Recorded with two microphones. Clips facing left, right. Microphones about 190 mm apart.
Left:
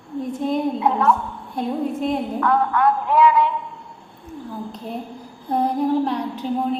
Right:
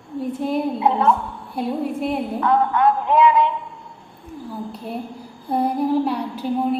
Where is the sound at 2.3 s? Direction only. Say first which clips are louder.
Right 2 dB; 20° right (ahead or behind).